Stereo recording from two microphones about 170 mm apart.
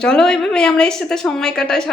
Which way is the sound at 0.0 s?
5° left (ahead or behind).